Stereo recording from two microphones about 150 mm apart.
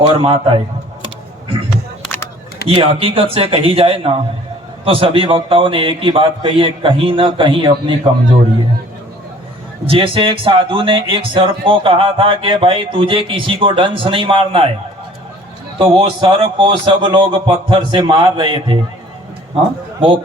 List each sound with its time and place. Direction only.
0.1 s speech: 35° right (ahead or behind)
2.6 s speech: 40° right (ahead or behind)
9.8 s speech: 40° right (ahead or behind)
15.8 s speech: 35° right (ahead or behind)